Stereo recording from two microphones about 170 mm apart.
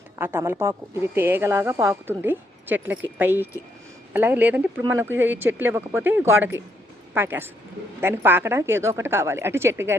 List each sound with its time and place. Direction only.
0.2 s speech: 10° right (ahead or behind)